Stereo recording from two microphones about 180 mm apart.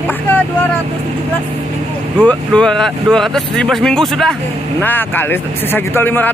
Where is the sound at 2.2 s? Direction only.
5° left (ahead or behind).